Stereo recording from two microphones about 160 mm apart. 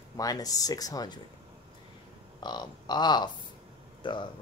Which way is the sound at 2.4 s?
25° left (ahead or behind).